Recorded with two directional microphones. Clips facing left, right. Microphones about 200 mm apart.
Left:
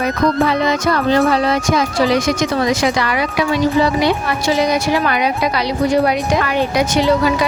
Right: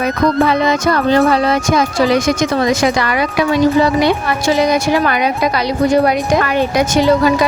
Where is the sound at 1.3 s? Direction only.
55° right (ahead or behind).